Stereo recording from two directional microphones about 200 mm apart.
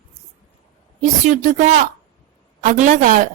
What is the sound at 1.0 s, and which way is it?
A woman's voice, 40° right (ahead or behind).